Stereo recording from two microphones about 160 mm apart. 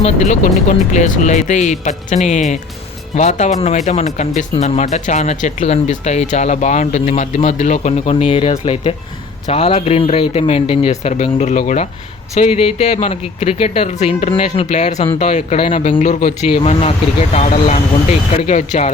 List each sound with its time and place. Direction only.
0.0 s speech: 50° left (ahead or behind)
16.0 s speech: 50° left (ahead or behind)